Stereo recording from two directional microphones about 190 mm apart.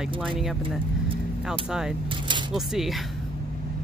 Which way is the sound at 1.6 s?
5° right (ahead or behind).